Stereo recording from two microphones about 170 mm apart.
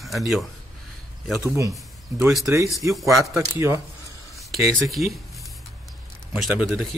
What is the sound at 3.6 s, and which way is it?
Speech, 15° right (ahead or behind).